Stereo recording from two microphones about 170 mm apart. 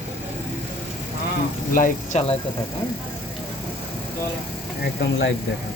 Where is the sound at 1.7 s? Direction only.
50° left (ahead or behind).